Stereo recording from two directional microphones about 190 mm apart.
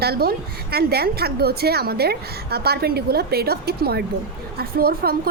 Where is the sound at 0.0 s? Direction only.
55° right (ahead or behind).